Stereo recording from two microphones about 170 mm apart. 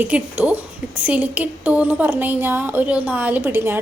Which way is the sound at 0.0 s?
10° right (ahead or behind).